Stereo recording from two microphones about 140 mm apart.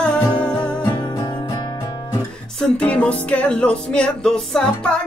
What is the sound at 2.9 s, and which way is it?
Music, 10° left (ahead or behind).